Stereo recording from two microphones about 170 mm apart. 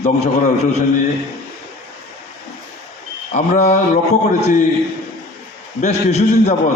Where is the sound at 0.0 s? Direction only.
40° left (ahead or behind).